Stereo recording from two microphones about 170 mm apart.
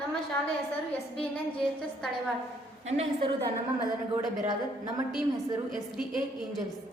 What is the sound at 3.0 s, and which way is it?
Speech, 30° right (ahead or behind).